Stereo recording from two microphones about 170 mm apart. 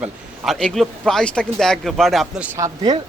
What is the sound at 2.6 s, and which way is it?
Speech, 20° right (ahead or behind).